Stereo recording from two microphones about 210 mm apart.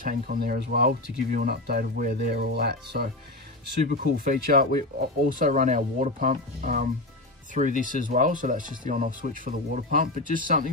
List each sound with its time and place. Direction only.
0.0 s speech: 40° right (ahead or behind)